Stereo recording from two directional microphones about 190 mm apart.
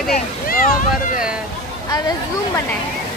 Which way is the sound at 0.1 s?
45° left (ahead or behind).